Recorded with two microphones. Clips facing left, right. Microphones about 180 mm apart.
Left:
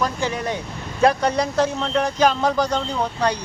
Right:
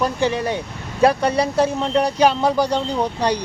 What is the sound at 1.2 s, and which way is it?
Speech, 10° right (ahead or behind).